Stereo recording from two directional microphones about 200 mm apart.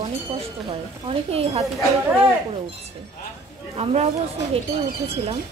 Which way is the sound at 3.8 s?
30° right (ahead or behind).